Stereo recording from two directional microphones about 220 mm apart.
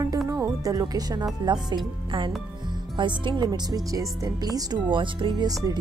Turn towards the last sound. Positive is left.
turn(degrees=-15)  # may be behind; listen again after turning